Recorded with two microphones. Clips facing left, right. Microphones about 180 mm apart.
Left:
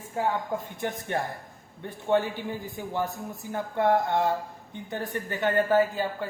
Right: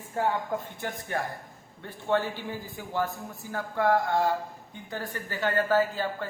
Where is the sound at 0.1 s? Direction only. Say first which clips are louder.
Even; 10° left (ahead or behind).